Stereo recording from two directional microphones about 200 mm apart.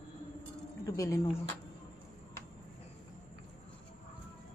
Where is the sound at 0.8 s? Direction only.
15° left (ahead or behind).